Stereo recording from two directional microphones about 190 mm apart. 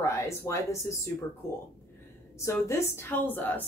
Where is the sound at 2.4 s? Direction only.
15° left (ahead or behind).